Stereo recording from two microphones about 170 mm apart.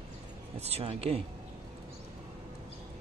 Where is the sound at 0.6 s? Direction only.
40° right (ahead or behind).